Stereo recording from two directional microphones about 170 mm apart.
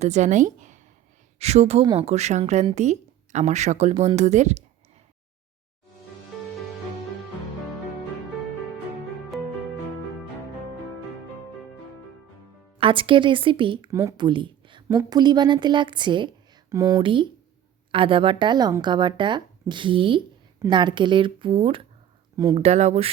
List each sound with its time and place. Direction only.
0.0 s a woman's voice: 45° right (ahead or behind)
12.8 s a woman's voice: 30° right (ahead or behind)
14.2 s a sound: 30° right (ahead or behind)
14.8 s a woman's voice: 20° right (ahead or behind); by 23.1 s 35° right (ahead or behind)